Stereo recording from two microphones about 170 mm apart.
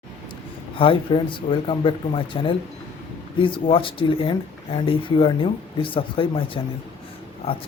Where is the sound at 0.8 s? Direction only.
30° left (ahead or behind).